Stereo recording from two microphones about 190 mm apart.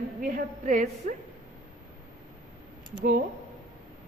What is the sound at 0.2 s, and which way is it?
Speech, 45° right (ahead or behind).